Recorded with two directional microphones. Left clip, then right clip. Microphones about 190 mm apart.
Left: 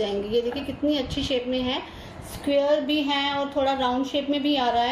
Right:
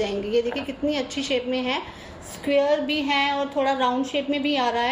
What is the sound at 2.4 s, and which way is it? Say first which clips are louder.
A woman's voice: right 1 dB; 15° right (ahead or behind).